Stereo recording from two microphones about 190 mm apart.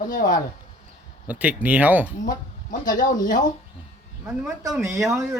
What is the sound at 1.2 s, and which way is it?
Speech, 10° right (ahead or behind).